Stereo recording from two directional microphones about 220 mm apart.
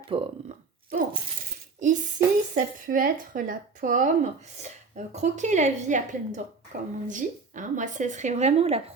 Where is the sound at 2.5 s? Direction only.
40° right (ahead or behind).